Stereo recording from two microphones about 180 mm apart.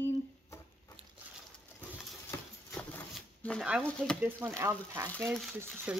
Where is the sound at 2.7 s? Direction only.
5° left (ahead or behind).